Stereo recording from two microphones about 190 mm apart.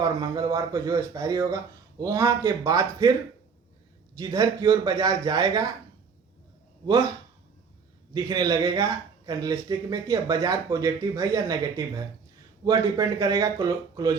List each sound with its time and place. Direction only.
0.0 s speech: 20° right (ahead or behind)
4.2 s speech: 20° right (ahead or behind)
6.8 s speech: 20° right (ahead or behind)
8.1 s speech: 20° right (ahead or behind)
12.6 s speech: 20° right (ahead or behind)